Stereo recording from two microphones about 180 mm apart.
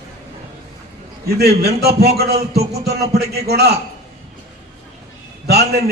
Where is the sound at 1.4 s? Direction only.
60° right (ahead or behind).